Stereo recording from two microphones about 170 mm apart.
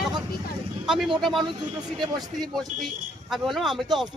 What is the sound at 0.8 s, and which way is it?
Speech, 5° right (ahead or behind).